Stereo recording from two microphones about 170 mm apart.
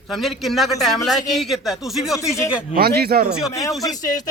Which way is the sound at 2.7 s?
65° right (ahead or behind).